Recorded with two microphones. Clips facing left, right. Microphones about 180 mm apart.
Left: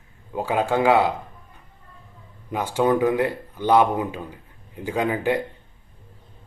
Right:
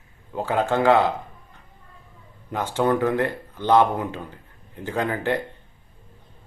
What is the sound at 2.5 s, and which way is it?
Speech, 10° left (ahead or behind).